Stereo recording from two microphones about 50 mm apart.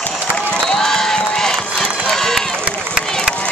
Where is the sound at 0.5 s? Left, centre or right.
Centre.